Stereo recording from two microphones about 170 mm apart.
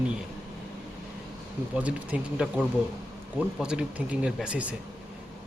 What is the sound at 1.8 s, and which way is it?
Speech, 10° right (ahead or behind).